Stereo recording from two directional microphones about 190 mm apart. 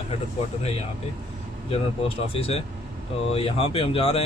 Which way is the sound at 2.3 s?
30° left (ahead or behind).